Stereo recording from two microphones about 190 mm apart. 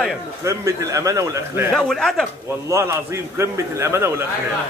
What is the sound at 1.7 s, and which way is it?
Speech, centre (ahead or behind).